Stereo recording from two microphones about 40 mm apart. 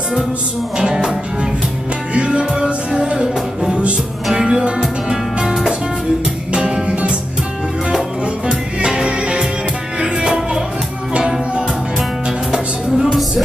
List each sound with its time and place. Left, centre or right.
0.7 s music: centre
4.3 s music: centre
6.5 s music: right
8.5 s music: right
12.4 s music: centre